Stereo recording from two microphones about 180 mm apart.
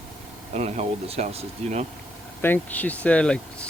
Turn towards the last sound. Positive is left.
turn(degrees=5)  # may be behind; listen again after turning